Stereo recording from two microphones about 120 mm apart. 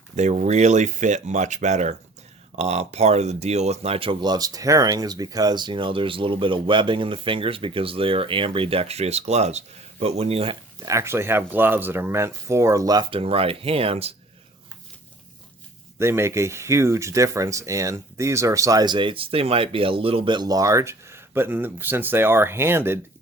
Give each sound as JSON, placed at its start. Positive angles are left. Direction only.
{"t": 0.2, "sound": "speech", "side_deg": -75}
{"t": 10.8, "sound": "speech", "side_deg": -25}
{"t": 13.1, "sound": "speech", "side_deg": -50}
{"t": 16.0, "sound": "speech", "side_deg": -20}